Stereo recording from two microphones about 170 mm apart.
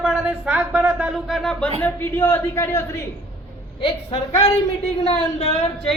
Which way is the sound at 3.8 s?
35° left (ahead or behind).